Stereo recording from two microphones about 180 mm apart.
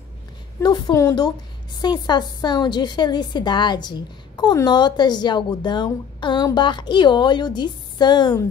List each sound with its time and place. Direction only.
0.6 s a woman's voice: 25° left (ahead or behind)